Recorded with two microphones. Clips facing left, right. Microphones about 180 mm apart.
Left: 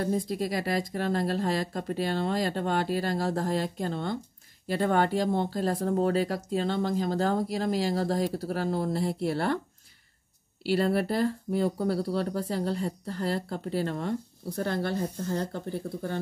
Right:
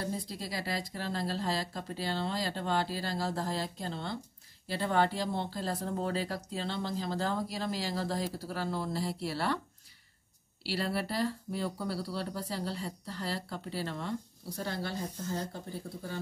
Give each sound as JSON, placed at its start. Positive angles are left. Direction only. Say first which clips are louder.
{"t": 0.0, "sound": "speech", "louder": "left 9 dB", "side_deg": 50}
{"t": 10.6, "sound": "speech", "louder": "left 8 dB", "side_deg": 50}